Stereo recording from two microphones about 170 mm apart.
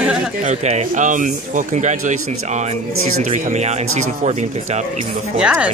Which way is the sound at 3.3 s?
40° right (ahead or behind).